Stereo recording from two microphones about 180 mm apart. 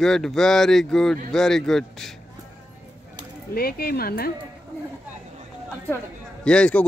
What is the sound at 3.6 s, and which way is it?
Speech, 55° left (ahead or behind).